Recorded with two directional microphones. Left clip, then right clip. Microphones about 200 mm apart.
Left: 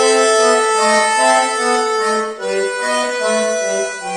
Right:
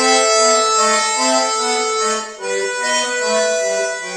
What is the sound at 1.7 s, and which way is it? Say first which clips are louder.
Accordion: left 2 dB; 40° right (ahead or behind).